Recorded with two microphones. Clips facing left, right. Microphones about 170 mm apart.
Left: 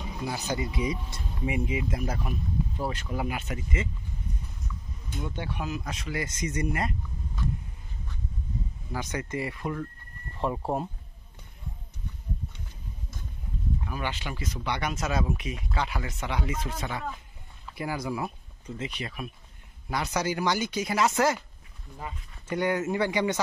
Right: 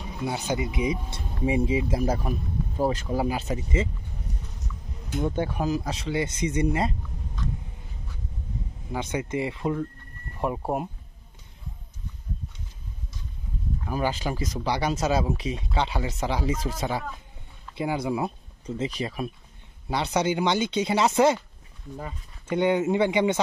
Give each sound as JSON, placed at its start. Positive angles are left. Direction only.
{"t": 0.2, "sound": "speech", "side_deg": -25}
{"t": 1.1, "sound": "speech", "side_deg": -30}
{"t": 5.2, "sound": "speech", "side_deg": -45}
{"t": 8.9, "sound": "speech", "side_deg": -20}
{"t": 10.3, "sound": "speech", "side_deg": -10}
{"t": 13.8, "sound": "speech", "side_deg": -35}
{"t": 22.5, "sound": "speech", "side_deg": -25}